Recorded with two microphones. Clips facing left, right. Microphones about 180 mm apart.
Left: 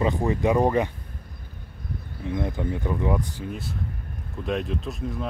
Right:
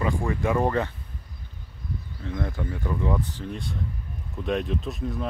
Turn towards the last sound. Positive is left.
turn(degrees=0)  # may be behind; listen again after turning